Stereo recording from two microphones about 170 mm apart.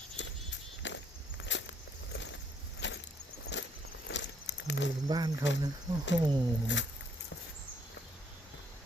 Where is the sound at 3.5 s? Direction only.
90° left.